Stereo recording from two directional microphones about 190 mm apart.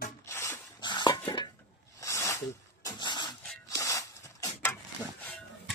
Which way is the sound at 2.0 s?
15° left (ahead or behind).